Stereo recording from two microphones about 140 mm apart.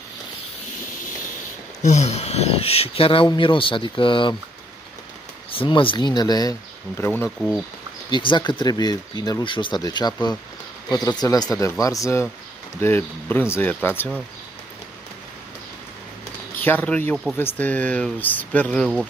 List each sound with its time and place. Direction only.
1.8 s speech: 55° left (ahead or behind); by 4.4 s 35° left (ahead or behind)
5.5 s speech: 40° left (ahead or behind)
7.0 s speech: 15° left (ahead or behind)
8.1 s speech: 35° left (ahead or behind); by 14.2 s 10° left (ahead or behind)
16.5 s speech: 15° left (ahead or behind)